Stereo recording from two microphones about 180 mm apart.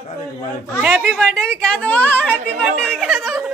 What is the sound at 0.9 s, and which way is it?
A woman's voice, 5° left (ahead or behind).